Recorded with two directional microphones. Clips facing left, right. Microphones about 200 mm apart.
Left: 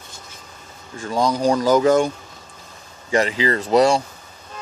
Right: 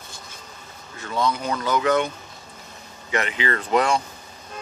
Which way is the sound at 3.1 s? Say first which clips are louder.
Left 6 dB; 35° left (ahead or behind).